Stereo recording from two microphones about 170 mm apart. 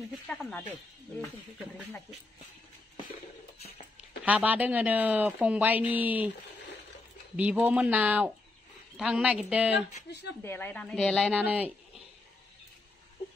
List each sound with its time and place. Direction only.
0.3 s speech: 5° left (ahead or behind)
4.2 s speech: 10° right (ahead or behind)
7.3 s speech: 10° right (ahead or behind)
10.0 s speech: 85° left
10.4 s speech: 10° left (ahead or behind)
11.3 s speech: 10° right (ahead or behind)